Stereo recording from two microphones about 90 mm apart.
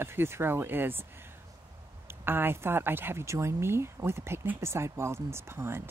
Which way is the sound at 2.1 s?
25° right (ahead or behind).